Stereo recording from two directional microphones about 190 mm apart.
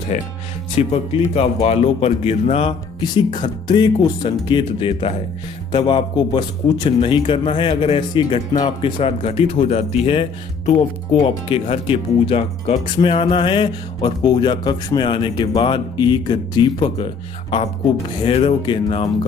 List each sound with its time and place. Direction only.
0.1 s speech: 35° left (ahead or behind)